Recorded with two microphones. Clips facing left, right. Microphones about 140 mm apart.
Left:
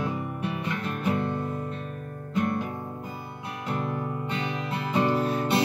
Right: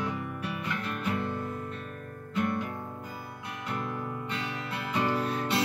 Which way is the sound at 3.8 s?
30° left (ahead or behind).